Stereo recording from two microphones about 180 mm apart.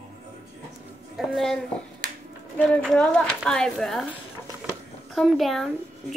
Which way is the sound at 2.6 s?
5° left (ahead or behind).